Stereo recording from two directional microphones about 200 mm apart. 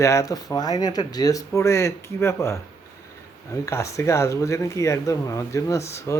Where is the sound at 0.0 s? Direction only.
15° left (ahead or behind).